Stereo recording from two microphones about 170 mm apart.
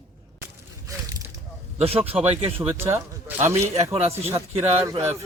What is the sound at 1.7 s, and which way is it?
Speech, 35° right (ahead or behind).